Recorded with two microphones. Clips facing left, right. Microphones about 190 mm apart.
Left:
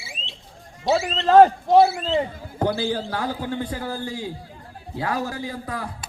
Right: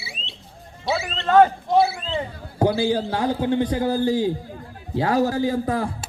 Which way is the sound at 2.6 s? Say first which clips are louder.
Right 4 dB; 15° right (ahead or behind).